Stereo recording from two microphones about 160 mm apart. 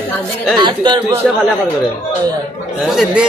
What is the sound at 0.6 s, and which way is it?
Speech, 30° right (ahead or behind).